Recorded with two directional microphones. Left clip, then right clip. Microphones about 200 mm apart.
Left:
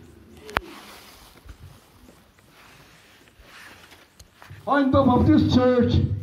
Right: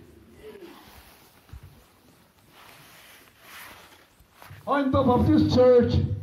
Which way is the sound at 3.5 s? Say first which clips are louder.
Right 1 dB; 35° right (ahead or behind).